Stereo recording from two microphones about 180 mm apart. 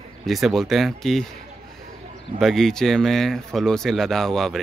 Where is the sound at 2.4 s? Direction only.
Centre (ahead or behind).